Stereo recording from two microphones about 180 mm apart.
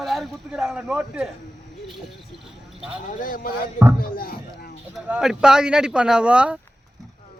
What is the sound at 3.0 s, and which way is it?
Speech, 50° left (ahead or behind).